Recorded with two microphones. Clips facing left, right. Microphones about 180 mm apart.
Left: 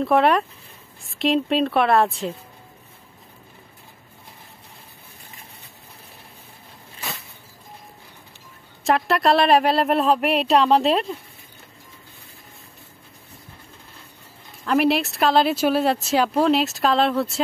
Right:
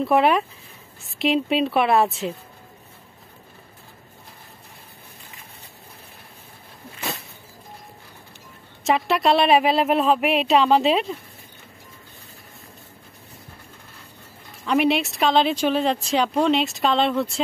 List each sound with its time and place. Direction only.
0.0 s speech: centre (ahead or behind)
8.8 s speech: centre (ahead or behind)
14.6 s speech: centre (ahead or behind)